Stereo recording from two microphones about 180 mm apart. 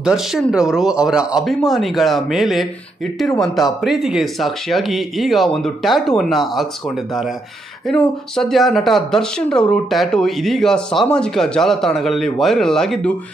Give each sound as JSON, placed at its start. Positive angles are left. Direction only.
{"t": 0.0, "sound": "speech", "side_deg": -5}
{"t": 7.9, "sound": "speech", "side_deg": 5}